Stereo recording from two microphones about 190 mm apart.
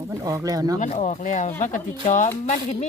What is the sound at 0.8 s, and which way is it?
Speech, 40° left (ahead or behind).